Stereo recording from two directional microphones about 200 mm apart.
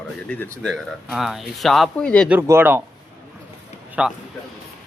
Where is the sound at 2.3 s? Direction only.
10° right (ahead or behind).